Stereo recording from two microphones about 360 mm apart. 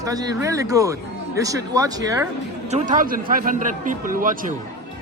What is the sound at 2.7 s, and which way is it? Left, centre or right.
Speech, right.